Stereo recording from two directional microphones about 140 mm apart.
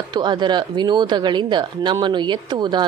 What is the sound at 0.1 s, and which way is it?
Speech, 35° right (ahead or behind).